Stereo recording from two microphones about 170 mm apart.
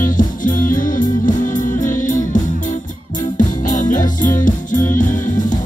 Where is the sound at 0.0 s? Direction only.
50° left (ahead or behind).